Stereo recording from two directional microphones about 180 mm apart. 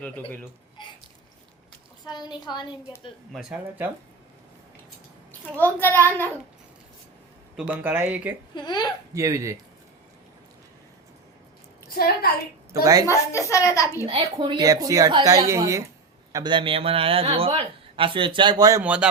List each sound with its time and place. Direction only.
2.0 s a woman's voice: 25° left (ahead or behind)
3.3 s speech: 5° right (ahead or behind)
5.5 s a woman's voice: 10° left (ahead or behind)
7.5 s speech: 10° right (ahead or behind)
8.5 s a woman's voice: 25° left (ahead or behind)
9.1 s speech: 20° right (ahead or behind)
11.9 s a woman's voice: 55° left (ahead or behind)
12.8 s a man's voice: 20° right (ahead or behind)
13.1 s a woman's voice: 15° left (ahead or behind)
14.1 s a man's voice: 30° right (ahead or behind)
18.8 s speech: 5° right (ahead or behind)